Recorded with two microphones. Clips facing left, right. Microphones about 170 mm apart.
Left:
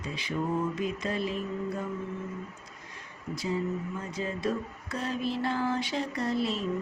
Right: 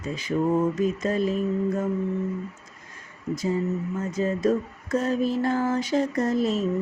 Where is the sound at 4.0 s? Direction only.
45° right (ahead or behind).